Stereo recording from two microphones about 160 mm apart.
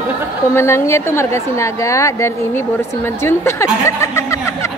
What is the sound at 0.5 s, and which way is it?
A woman's voice, 15° left (ahead or behind).